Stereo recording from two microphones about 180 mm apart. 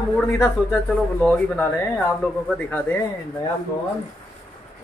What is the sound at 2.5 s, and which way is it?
Speech, 10° left (ahead or behind).